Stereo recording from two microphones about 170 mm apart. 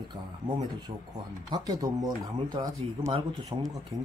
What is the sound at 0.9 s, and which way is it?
Speech, 30° right (ahead or behind).